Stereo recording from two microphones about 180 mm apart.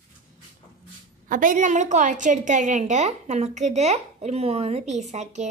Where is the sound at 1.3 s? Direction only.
45° right (ahead or behind).